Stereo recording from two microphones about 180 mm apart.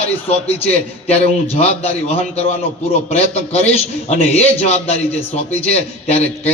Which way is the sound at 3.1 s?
35° left (ahead or behind).